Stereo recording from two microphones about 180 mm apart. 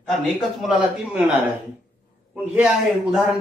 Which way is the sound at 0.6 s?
5° right (ahead or behind).